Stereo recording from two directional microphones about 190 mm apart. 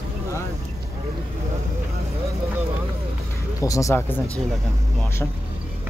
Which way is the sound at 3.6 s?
15° left (ahead or behind).